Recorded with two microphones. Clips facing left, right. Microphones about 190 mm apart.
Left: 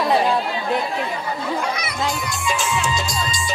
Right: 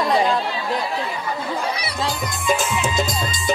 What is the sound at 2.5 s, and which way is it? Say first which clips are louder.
Music: right 2 dB; 55° right (ahead or behind).